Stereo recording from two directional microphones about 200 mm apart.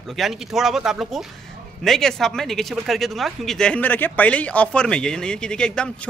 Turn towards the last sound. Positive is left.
turn(degrees=5)  # may be behind; listen again after turning